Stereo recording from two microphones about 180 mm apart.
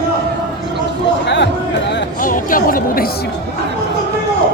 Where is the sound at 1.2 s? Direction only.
75° left (ahead or behind).